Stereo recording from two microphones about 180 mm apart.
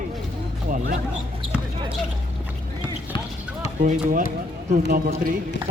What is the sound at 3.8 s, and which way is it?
Speech, 40° right (ahead or behind).